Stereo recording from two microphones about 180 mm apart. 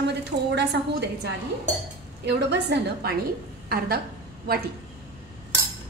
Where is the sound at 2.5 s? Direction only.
70° right (ahead or behind).